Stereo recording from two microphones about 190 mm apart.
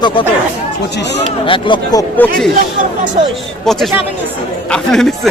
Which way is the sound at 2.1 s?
10° left (ahead or behind).